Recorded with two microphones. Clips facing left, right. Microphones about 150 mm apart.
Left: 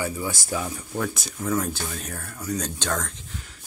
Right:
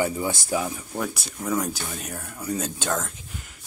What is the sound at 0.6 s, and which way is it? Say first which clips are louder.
Speech: even; 10° right (ahead or behind).